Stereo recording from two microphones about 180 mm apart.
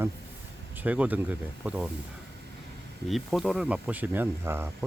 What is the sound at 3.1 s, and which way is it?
Speech, centre (ahead or behind).